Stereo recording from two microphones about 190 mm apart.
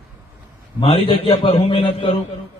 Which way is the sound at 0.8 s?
30° left (ahead or behind).